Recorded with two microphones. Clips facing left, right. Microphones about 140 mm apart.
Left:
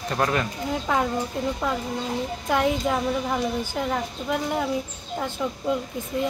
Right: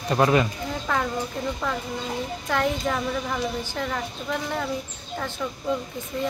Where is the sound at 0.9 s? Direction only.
15° left (ahead or behind).